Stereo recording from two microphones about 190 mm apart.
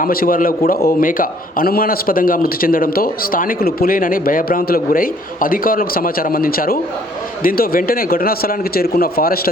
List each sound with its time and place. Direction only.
0.0 s a man's voice: 50° left (ahead or behind)